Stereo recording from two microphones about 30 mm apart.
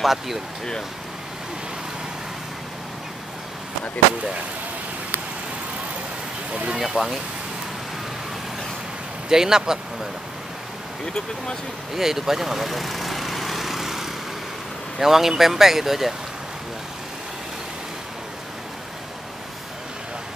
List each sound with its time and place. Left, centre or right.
0.0 s speech: centre
6.5 s speech: right
6.8 s speech: centre
9.3 s speech: right
11.9 s vehicle: centre
15.0 s speech: centre